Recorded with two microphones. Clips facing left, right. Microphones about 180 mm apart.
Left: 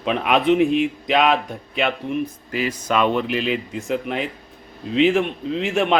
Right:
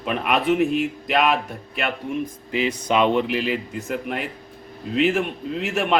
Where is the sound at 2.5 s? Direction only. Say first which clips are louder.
Right 1 dB; 20° right (ahead or behind).